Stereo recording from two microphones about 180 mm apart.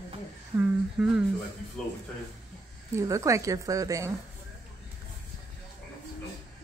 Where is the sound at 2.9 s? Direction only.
15° right (ahead or behind).